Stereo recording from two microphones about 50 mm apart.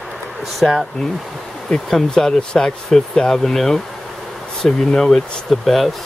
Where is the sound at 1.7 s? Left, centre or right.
Centre.